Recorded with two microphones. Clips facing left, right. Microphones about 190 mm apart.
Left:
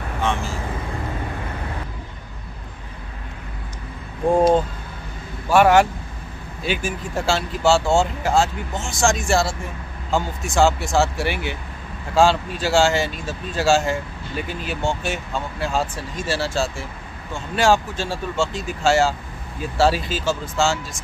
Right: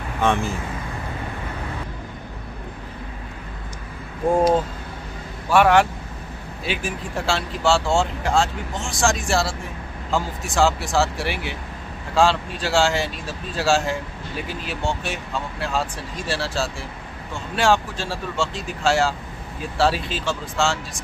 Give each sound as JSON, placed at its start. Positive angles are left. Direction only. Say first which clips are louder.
{"t": 0.2, "sound": "vehicle", "louder": "right 3 dB", "side_deg": -55}
{"t": 5.5, "sound": "speech", "louder": "left 2 dB", "side_deg": 0}